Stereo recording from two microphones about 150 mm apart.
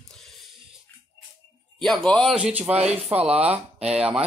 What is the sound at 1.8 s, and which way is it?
Speech, 5° left (ahead or behind).